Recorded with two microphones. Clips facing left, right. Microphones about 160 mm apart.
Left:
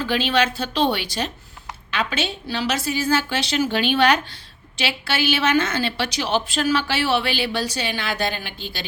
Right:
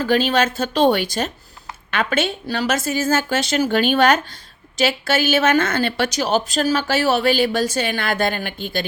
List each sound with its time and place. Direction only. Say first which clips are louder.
0.0 s a woman's voice: right 3 dB; 45° right (ahead or behind)